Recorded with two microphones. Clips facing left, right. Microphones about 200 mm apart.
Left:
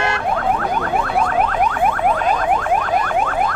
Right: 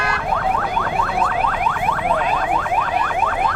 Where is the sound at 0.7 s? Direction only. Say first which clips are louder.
Left 2 dB; 45° left (ahead or behind).